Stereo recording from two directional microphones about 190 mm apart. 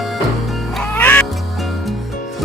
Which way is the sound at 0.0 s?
Centre (ahead or behind).